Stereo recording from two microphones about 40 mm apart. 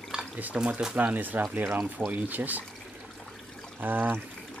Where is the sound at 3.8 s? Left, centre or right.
Right.